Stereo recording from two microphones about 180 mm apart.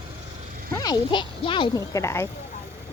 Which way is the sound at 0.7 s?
20° left (ahead or behind).